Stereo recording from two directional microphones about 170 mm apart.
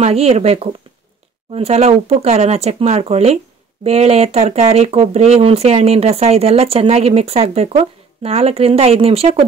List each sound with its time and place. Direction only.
0.0 s speech: 35° right (ahead or behind)